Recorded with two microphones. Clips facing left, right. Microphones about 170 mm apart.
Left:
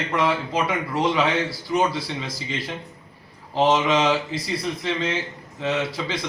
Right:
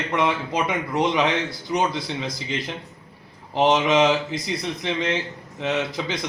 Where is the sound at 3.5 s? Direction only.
20° right (ahead or behind).